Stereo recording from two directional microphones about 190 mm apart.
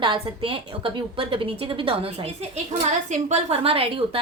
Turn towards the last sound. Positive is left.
turn(degrees=-30)  # may be behind; listen again after turning